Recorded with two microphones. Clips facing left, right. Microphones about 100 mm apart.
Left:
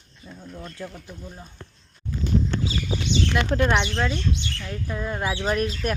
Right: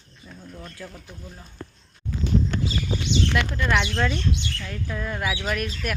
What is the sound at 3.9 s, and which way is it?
Speech, 10° left (ahead or behind).